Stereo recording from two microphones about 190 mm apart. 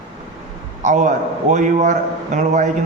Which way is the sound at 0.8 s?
40° right (ahead or behind).